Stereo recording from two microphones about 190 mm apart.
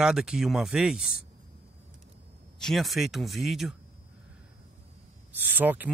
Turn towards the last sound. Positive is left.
turn(degrees=-10)  # may be behind; listen again after turning